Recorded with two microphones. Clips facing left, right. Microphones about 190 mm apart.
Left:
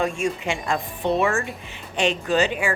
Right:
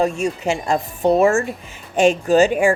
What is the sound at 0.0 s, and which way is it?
Speech, 40° right (ahead or behind).